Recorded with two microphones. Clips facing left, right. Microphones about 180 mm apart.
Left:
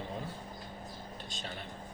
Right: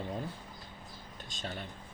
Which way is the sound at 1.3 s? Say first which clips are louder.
Right 4 dB; 45° right (ahead or behind).